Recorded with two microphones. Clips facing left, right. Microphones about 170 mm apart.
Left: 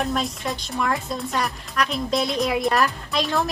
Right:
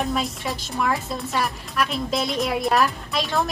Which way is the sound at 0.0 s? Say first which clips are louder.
Even; centre (ahead or behind).